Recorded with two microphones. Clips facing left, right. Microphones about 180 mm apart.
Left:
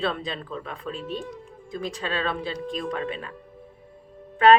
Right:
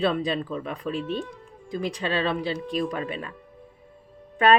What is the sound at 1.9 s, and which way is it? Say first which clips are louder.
Speech: right 2 dB; 25° right (ahead or behind).